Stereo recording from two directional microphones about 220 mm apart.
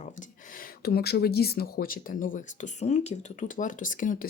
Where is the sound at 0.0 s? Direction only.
35° left (ahead or behind).